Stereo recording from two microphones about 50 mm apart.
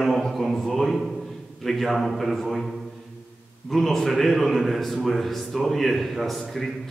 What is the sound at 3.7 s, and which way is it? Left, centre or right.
A man's voice, centre.